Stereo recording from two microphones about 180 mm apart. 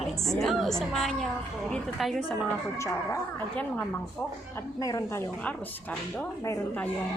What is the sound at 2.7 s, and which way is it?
Speech, 15° left (ahead or behind).